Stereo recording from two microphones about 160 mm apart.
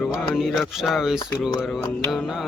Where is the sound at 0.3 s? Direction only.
Centre (ahead or behind).